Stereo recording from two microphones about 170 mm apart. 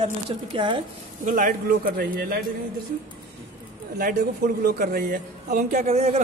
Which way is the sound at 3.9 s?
60° right (ahead or behind).